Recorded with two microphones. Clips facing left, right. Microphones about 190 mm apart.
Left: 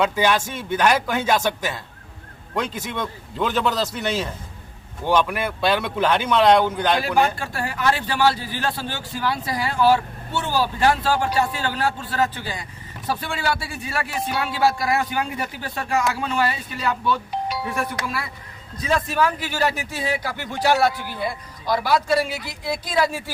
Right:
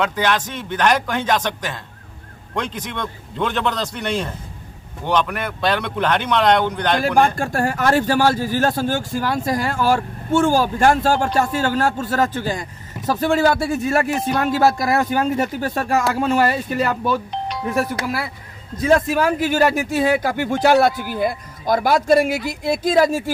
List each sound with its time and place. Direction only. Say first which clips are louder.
0.0 s a man's voice: even; 10° left (ahead or behind)
7.0 s speech: right 4 dB; 45° right (ahead or behind)
18.9 s speech: right 5 dB; 50° right (ahead or behind)